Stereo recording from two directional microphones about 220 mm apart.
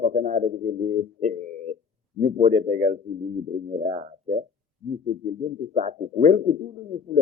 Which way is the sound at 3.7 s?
30° right (ahead or behind).